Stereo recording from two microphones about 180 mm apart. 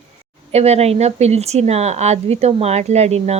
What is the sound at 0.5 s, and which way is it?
Speech, 35° right (ahead or behind).